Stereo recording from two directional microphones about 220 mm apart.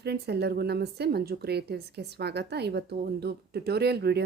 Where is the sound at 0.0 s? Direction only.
50° right (ahead or behind).